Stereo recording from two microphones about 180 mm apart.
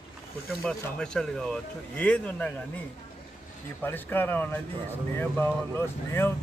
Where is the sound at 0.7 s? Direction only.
5° left (ahead or behind).